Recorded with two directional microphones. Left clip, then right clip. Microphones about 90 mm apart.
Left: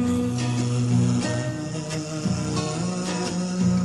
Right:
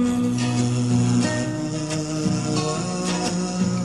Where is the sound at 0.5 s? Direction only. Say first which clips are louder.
Right 3 dB; 20° right (ahead or behind).